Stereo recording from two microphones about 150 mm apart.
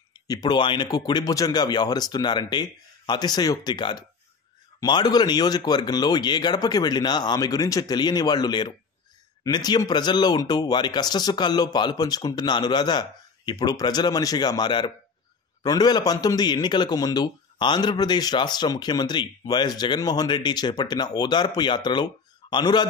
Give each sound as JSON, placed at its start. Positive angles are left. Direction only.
{"t": 0.3, "sound": "a man's voice", "side_deg": 30}